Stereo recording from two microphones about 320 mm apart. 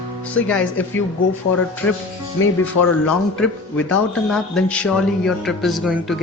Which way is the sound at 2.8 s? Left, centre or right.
Left.